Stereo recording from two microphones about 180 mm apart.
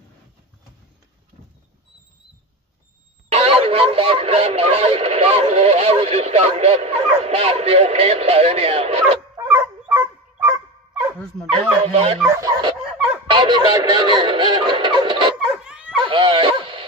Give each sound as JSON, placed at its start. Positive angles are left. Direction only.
{"t": 3.3, "sound": "speech", "side_deg": -35}
{"t": 9.5, "sound": "dog", "side_deg": -10}
{"t": 11.1, "sound": "speech", "side_deg": 5}
{"t": 11.8, "sound": "speech", "side_deg": -35}
{"t": 12.4, "sound": "speech", "side_deg": -20}
{"t": 12.9, "sound": "a sound", "side_deg": -5}
{"t": 13.3, "sound": "speech", "side_deg": -25}
{"t": 15.4, "sound": "dog", "side_deg": -5}
{"t": 16.1, "sound": "dog", "side_deg": -30}